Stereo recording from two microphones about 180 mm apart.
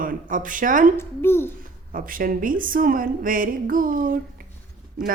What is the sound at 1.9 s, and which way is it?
A woman's voice, 50° right (ahead or behind).